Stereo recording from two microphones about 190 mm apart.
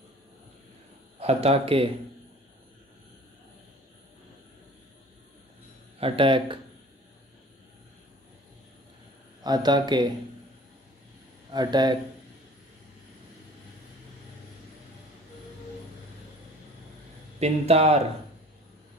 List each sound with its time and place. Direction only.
1.2 s speech: 30° right (ahead or behind)
5.9 s a man's voice: 30° right (ahead or behind)
9.4 s a man's voice: 20° right (ahead or behind)
11.5 s a man's voice: 20° right (ahead or behind)
17.4 s speech: 35° right (ahead or behind)